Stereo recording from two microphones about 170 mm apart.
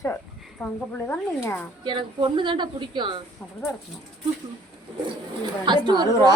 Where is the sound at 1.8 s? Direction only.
30° right (ahead or behind).